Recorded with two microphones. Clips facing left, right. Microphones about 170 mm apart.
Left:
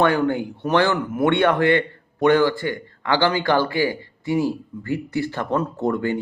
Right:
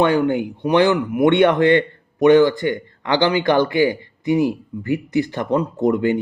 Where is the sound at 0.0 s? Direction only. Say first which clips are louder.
Right 2 dB; 20° right (ahead or behind).